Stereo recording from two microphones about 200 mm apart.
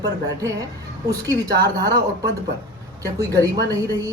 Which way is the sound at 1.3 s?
20° right (ahead or behind).